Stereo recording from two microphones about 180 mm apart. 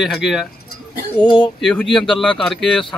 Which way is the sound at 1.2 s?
25° left (ahead or behind).